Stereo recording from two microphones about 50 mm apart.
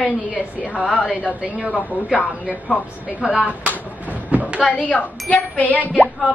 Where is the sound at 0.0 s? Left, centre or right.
Right.